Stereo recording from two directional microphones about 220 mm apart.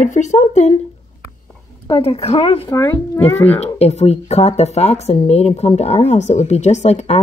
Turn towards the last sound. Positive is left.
turn(degrees=30)  # may be behind; listen again after turning